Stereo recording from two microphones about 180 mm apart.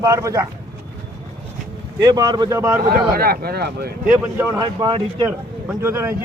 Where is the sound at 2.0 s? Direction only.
20° right (ahead or behind).